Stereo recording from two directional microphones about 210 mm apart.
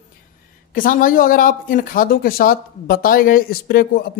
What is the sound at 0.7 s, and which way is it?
Speech, 40° left (ahead or behind).